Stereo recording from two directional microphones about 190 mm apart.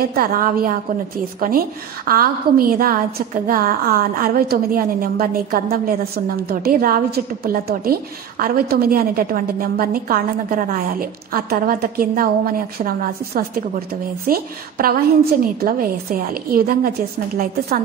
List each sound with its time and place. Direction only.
0.0 s a woman's voice: 50° right (ahead or behind)